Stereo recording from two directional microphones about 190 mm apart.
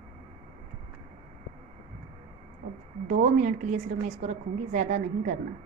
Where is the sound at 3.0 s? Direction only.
40° right (ahead or behind).